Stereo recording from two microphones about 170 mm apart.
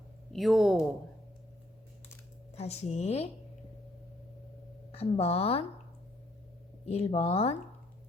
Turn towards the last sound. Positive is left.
turn(degrees=35)  # may be behind; listen again after turning